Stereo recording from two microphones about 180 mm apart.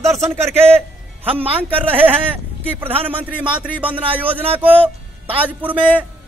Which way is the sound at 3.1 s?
10° right (ahead or behind).